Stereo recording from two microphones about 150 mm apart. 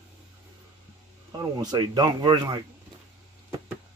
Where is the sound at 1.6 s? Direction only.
25° right (ahead or behind).